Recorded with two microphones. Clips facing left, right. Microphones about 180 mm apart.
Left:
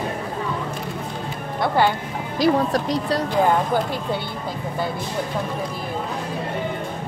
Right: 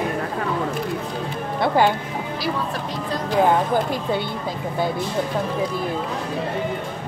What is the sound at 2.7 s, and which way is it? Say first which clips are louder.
Speech: left 5 dB; 35° left (ahead or behind).